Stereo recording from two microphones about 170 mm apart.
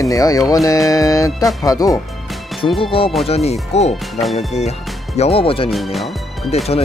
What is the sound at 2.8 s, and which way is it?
Speech, 30° left (ahead or behind).